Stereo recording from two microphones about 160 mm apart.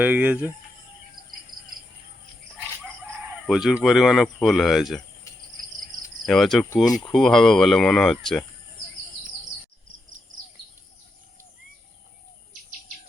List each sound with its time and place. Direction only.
0.0 s speech: 10° right (ahead or behind)
1.5 s cricket: 60° right (ahead or behind)
3.4 s speech: 5° right (ahead or behind)
6.2 s speech: centre (ahead or behind)